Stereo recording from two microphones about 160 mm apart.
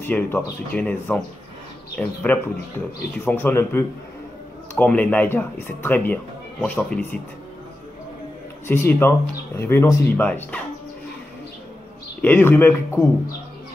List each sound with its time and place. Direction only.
0.0 s speech: 10° left (ahead or behind)
8.6 s speech: 15° left (ahead or behind)
12.2 s speech: 10° left (ahead or behind)